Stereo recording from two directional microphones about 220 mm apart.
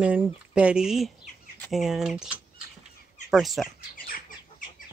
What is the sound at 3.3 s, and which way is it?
Speech, centre (ahead or behind).